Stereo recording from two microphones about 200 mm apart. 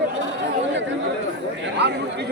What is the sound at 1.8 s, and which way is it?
Chatter, 55° right (ahead or behind).